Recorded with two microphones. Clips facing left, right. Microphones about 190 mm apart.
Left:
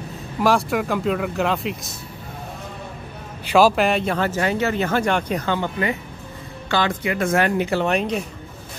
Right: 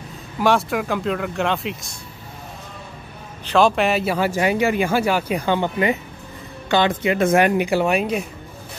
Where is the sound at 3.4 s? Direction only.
5° left (ahead or behind); by 8.2 s 10° right (ahead or behind).